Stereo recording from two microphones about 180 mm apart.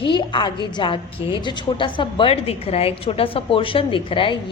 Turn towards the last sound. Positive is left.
turn(degrees=30)  # may be behind; listen again after turning